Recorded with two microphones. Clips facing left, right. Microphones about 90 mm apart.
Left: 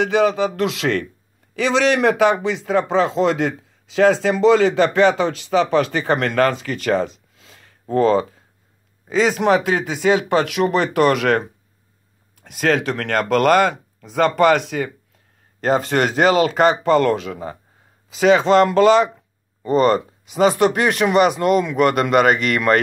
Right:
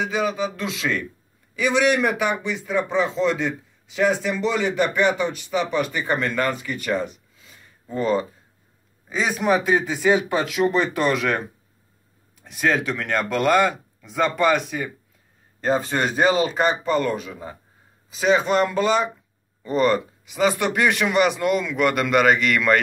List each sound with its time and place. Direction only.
0.0 s speech: 75° left (ahead or behind)
1.5 s a man's voice: 90° left; by 17.6 s 70° left (ahead or behind)
18.2 s a man's voice: 90° left
19.7 s a man's voice: 40° left (ahead or behind)